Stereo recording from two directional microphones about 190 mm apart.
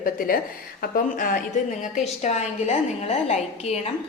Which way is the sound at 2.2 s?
35° left (ahead or behind).